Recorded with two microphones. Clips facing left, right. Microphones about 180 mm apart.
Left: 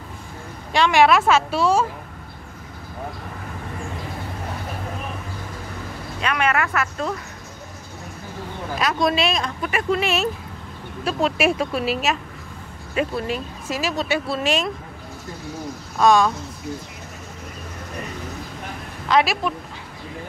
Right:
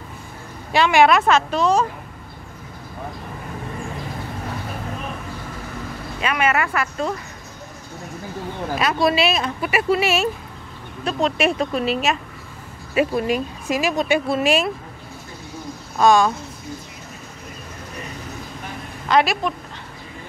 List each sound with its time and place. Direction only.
0.7 s speech: centre (ahead or behind)
6.2 s speech: 5° right (ahead or behind)
8.7 s speech: 5° right (ahead or behind)
12.9 s speech: 15° right (ahead or behind)
16.0 s speech: centre (ahead or behind)
19.0 s speech: centre (ahead or behind)